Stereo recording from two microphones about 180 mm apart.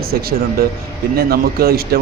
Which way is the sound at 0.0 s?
60° right (ahead or behind).